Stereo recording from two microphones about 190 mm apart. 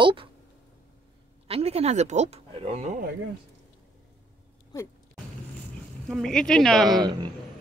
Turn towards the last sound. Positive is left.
turn(degrees=0)  # may be behind; listen again after turning